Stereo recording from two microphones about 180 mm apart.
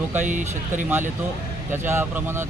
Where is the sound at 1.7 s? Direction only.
10° right (ahead or behind).